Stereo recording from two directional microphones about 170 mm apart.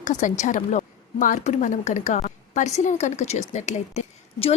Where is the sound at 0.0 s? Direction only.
45° left (ahead or behind).